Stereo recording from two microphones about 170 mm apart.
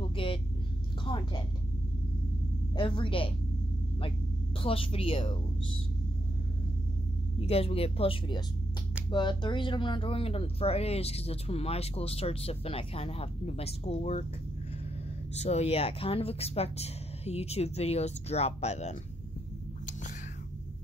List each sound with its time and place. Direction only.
0.0 s vehicle: 30° left (ahead or behind)
1.0 s a sound: 30° left (ahead or behind)
2.7 s speech: 30° left (ahead or behind)
4.6 s speech: 30° left (ahead or behind)
7.3 s speech: 35° left (ahead or behind)
15.3 s speech: 40° left (ahead or behind)